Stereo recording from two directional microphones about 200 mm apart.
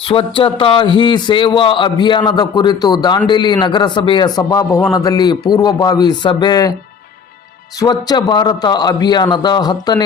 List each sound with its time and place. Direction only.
0.0 s speech: 25° left (ahead or behind)
7.8 s speech: 20° left (ahead or behind)